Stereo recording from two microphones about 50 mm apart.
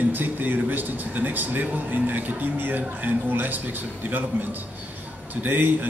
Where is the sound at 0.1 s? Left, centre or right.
Right.